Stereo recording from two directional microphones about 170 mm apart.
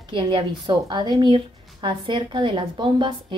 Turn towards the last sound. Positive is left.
turn(degrees=-30)  # may be behind; listen again after turning